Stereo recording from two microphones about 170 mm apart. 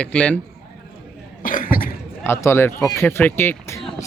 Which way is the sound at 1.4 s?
55° left (ahead or behind).